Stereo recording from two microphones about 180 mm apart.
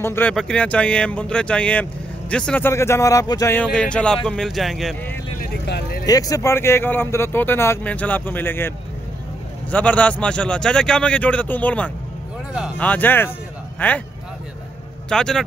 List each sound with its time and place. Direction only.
0.0 s speech: 10° left (ahead or behind)
5.7 s vehicle: 65° left (ahead or behind)
6.0 s speech: 20° left (ahead or behind)
15.0 s a man's voice: 5° left (ahead or behind)